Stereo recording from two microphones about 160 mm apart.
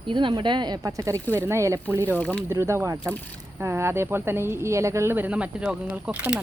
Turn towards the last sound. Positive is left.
turn(degrees=-10)  # may be behind; listen again after turning